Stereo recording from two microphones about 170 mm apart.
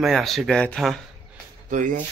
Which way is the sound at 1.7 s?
50° right (ahead or behind).